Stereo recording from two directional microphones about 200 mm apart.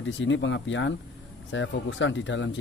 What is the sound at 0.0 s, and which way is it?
Speech, 70° left (ahead or behind).